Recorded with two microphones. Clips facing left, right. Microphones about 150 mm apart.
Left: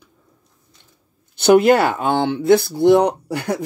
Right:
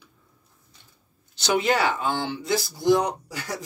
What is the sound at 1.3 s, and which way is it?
Speech, 55° left (ahead or behind).